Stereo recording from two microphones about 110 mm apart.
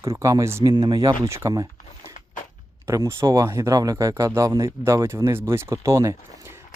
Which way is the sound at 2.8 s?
30° right (ahead or behind).